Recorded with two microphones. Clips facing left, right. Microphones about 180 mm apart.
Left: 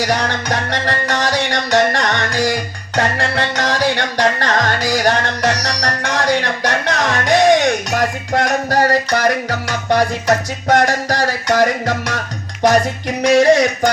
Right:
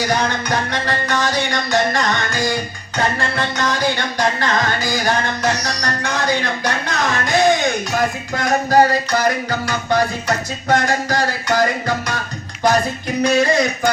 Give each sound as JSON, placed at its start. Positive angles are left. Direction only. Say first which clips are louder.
{"t": 0.0, "sound": "music", "louder": "left 1 dB", "side_deg": 75}